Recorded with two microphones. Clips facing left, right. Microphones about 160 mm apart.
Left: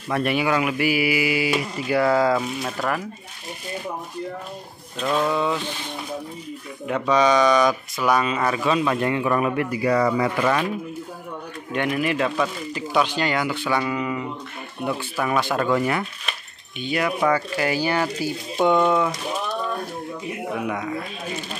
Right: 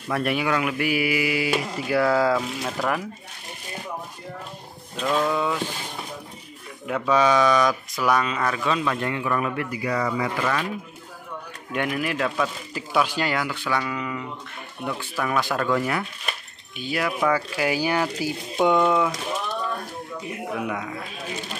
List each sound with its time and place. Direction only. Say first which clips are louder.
0.1 s speech: left 2 dB; centre (ahead or behind)
5.0 s speech: left 1 dB; centre (ahead or behind)
6.9 s speech: left 1 dB; 5° right (ahead or behind)
8.8 s a man's voice: left 4 dB; 20° left (ahead or behind)
9.7 s speech: left 6 dB; 40° left (ahead or behind)
11.7 s speech: left 3 dB; centre (ahead or behind)
20.5 s speech: left 3 dB; centre (ahead or behind)